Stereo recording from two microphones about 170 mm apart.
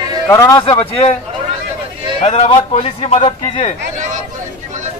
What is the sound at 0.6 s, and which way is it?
Speech, 30° left (ahead or behind).